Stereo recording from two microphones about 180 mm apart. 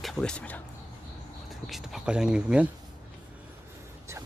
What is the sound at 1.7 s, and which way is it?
Speech, centre (ahead or behind).